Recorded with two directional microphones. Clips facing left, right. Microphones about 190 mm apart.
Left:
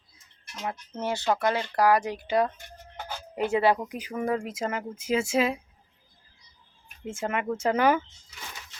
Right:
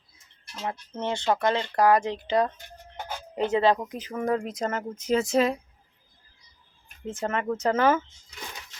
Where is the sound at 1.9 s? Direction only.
25° right (ahead or behind).